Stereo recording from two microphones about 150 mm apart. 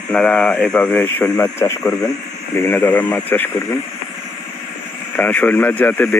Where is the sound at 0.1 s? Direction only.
5° left (ahead or behind).